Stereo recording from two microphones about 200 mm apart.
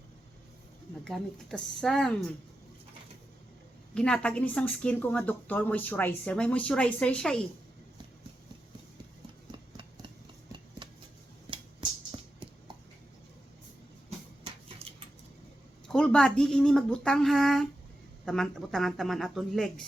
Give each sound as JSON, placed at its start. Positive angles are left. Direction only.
{"t": 1.0, "sound": "speech", "side_deg": 5}
{"t": 3.9, "sound": "a woman's voice", "side_deg": 5}
{"t": 9.5, "sound": "engine", "side_deg": -25}
{"t": 10.8, "sound": "a sound", "side_deg": -20}
{"t": 14.8, "sound": "a sound", "side_deg": -30}
{"t": 15.9, "sound": "speech", "side_deg": 5}